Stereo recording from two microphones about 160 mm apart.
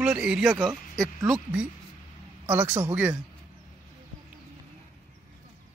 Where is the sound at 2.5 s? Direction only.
15° right (ahead or behind).